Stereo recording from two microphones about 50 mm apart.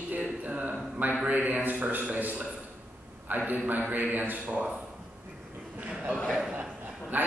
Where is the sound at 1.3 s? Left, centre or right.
Right.